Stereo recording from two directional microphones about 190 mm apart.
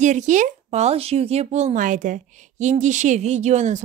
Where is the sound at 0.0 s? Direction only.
40° right (ahead or behind).